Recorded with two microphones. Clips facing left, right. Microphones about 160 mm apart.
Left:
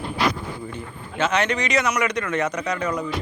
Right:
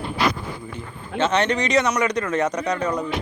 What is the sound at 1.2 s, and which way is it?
A man's voice, 35° right (ahead or behind).